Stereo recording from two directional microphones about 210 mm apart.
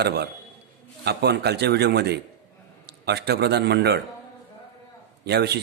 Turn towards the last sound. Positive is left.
turn(degrees=-50)  # may be behind; listen again after turning